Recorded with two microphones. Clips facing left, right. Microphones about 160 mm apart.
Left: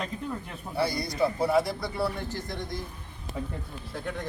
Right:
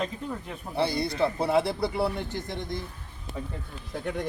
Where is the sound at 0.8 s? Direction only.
30° right (ahead or behind).